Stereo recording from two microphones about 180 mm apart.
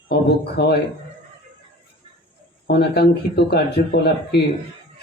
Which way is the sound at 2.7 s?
65° left (ahead or behind).